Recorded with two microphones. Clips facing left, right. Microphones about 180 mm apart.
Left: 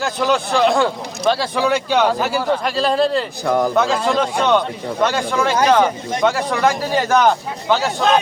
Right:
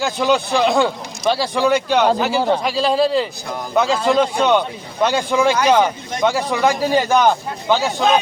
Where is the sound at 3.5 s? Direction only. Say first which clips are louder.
Left 10 dB; 75° left (ahead or behind).